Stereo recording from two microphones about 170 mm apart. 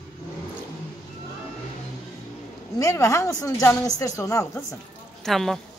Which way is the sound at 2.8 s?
20° left (ahead or behind).